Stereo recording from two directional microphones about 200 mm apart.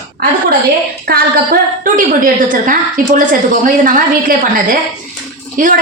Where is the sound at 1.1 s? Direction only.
50° right (ahead or behind).